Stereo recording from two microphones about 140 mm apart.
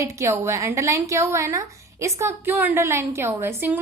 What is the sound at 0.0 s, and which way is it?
A woman's voice, 20° right (ahead or behind).